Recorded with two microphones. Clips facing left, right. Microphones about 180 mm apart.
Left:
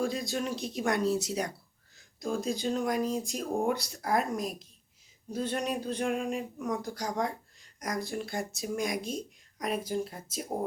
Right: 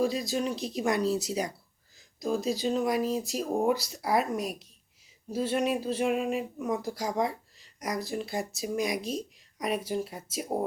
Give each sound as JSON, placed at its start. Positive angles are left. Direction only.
{"t": 0.0, "sound": "speech", "side_deg": 0}